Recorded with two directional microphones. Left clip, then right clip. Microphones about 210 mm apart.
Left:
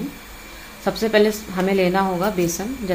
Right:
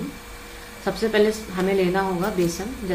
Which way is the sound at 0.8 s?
35° left (ahead or behind).